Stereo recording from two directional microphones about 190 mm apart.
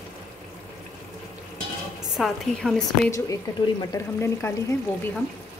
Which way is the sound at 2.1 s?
Centre (ahead or behind).